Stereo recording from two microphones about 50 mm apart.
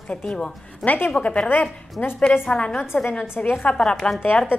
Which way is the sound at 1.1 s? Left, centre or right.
Left.